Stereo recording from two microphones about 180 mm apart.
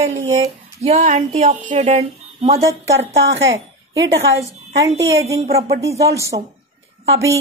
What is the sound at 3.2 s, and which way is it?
A woman's voice, 90° right.